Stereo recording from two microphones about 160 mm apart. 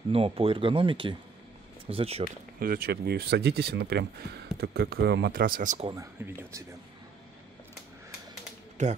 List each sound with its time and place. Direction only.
0.1 s speech: 35° right (ahead or behind)
2.6 s speech: 65° right (ahead or behind)
5.9 s speech: 20° right (ahead or behind)
8.8 s speech: 50° right (ahead or behind)